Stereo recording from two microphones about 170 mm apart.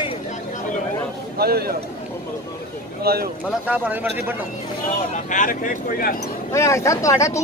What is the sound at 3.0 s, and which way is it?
Speech, 65° right (ahead or behind).